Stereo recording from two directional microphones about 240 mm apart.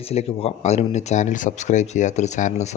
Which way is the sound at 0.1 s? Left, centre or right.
Left.